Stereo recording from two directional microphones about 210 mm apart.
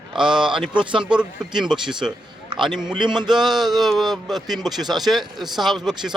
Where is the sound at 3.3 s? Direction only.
Centre (ahead or behind).